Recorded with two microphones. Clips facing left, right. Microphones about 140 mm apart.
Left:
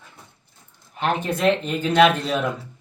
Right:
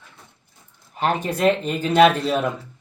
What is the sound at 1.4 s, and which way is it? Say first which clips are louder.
Speech: right 2 dB; 5° right (ahead or behind).